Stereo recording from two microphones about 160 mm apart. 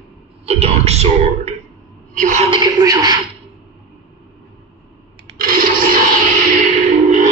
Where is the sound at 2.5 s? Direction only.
25° right (ahead or behind).